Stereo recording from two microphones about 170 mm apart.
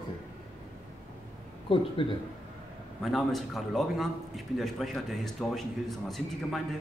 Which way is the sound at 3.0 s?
Centre (ahead or behind).